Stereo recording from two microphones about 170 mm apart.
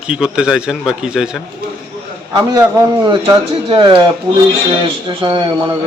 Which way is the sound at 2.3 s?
20° right (ahead or behind).